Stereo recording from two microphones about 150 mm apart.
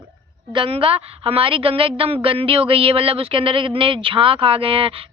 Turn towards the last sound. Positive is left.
turn(degrees=-40)  # may be behind; listen again after turning